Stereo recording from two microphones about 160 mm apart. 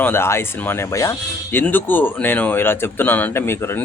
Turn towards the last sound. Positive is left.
turn(degrees=15)  # may be behind; listen again after turning